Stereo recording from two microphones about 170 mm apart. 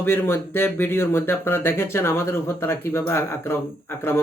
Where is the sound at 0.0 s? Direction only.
15° left (ahead or behind).